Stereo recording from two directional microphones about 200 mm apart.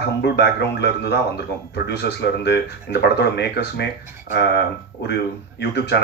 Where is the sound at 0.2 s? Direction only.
60° left (ahead or behind).